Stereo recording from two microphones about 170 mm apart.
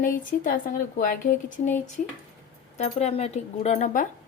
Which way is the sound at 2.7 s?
40° left (ahead or behind).